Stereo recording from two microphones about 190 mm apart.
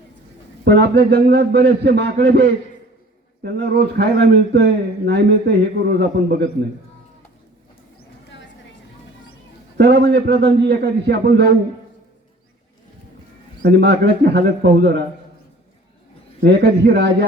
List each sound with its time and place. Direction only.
0.6 s a man's voice: 60° right (ahead or behind)
9.7 s a man's voice: 60° right (ahead or behind)
13.6 s a man's voice: 60° right (ahead or behind)
16.4 s a man's voice: 60° right (ahead or behind)